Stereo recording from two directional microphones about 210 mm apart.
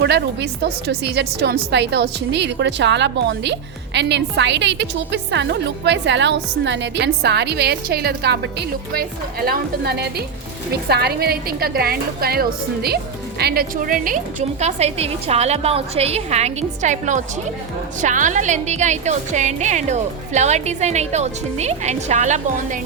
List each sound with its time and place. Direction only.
0.0 s a woman's voice: 55° right (ahead or behind); by 22.8 s 35° right (ahead or behind)